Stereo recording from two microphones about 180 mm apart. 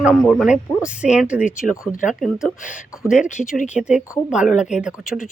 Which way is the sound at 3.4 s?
40° left (ahead or behind).